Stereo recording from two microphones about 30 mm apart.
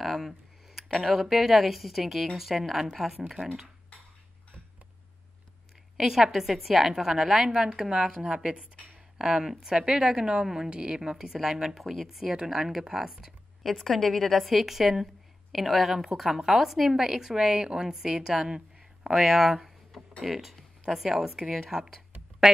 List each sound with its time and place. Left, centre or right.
0.0 s a sound: centre
1.0 s a woman's voice: centre
5.9 s a woman's voice: centre
7.4 s a woman's voice: right
11.0 s a woman's voice: centre
11.8 s speech: centre
12.1 s a woman's voice: centre
13.7 s a woman's voice: centre
19.1 s a woman's voice: centre